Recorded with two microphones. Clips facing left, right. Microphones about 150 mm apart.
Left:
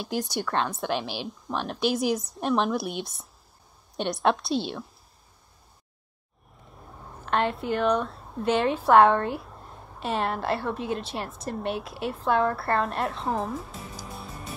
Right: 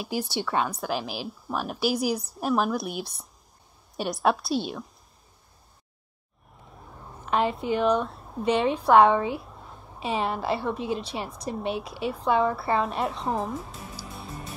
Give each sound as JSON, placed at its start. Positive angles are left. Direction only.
{"t": 0.0, "sound": "a woman's voice", "side_deg": -5}
{"t": 7.2, "sound": "a woman's voice", "side_deg": 0}